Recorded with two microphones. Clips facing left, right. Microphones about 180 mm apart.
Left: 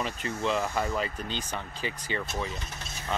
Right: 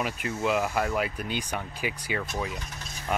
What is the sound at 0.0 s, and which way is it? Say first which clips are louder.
Speech: right 2 dB; 10° right (ahead or behind).